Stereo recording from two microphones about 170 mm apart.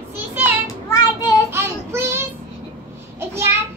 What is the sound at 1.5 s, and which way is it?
Child singing, 15° right (ahead or behind).